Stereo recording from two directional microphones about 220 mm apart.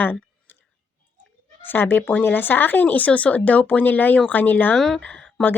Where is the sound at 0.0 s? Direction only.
10° left (ahead or behind).